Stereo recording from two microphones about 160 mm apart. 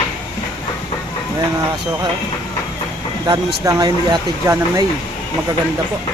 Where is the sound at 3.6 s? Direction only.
20° right (ahead or behind).